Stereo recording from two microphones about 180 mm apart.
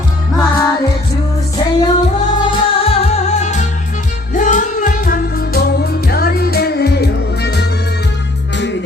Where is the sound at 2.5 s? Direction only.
35° left (ahead or behind).